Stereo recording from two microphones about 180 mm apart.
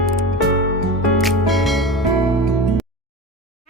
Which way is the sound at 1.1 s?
Centre (ahead or behind).